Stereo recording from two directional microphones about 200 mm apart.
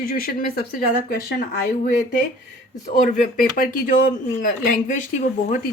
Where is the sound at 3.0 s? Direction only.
45° left (ahead or behind).